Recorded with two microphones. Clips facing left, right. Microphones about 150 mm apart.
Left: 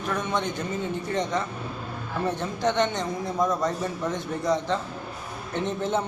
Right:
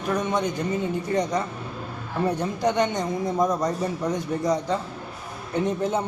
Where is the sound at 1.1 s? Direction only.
40° right (ahead or behind).